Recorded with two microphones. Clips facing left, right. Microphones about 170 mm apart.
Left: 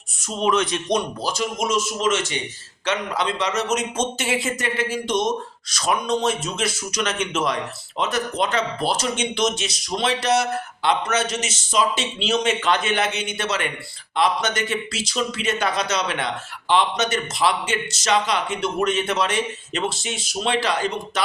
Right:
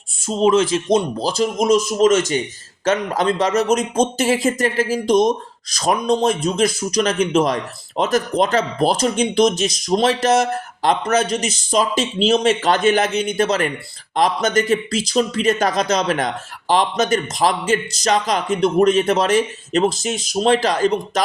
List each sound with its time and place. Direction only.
0.2 s speech: 30° right (ahead or behind)